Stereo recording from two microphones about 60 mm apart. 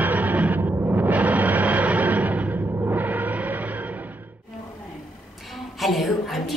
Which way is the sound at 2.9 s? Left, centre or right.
Right.